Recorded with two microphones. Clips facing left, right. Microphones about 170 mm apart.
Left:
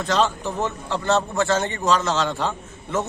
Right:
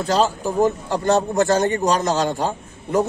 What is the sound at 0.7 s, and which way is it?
A man's voice, 45° right (ahead or behind).